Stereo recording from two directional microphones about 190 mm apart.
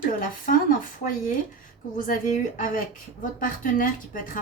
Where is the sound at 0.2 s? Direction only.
45° left (ahead or behind).